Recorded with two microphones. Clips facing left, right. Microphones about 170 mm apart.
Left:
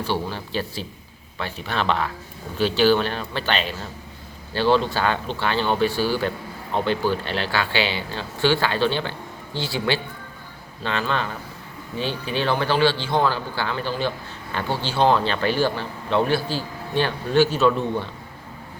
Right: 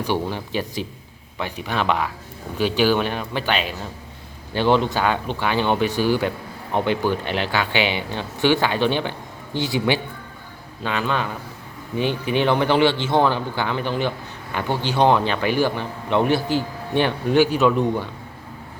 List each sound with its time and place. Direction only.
0.0 s speech: 15° right (ahead or behind)